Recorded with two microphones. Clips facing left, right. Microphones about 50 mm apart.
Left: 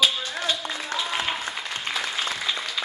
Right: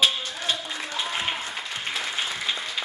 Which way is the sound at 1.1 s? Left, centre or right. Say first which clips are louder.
Left 1 dB; left.